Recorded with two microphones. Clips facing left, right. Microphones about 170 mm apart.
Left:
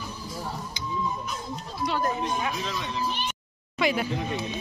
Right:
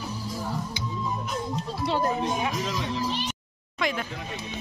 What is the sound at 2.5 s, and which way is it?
Speech, 90° right.